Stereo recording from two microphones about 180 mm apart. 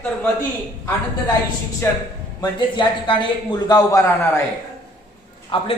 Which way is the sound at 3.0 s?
25° left (ahead or behind).